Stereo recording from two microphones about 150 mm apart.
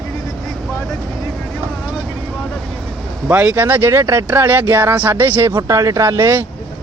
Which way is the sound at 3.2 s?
10° right (ahead or behind).